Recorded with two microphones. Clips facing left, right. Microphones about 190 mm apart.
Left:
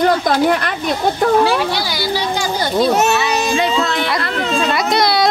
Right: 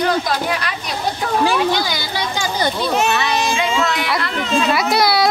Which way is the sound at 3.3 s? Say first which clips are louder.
Left 2 dB; 40° left (ahead or behind).